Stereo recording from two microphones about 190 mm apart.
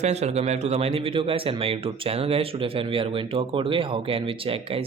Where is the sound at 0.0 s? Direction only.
35° right (ahead or behind).